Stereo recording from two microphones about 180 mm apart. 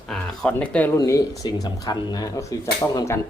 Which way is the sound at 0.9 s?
20° left (ahead or behind).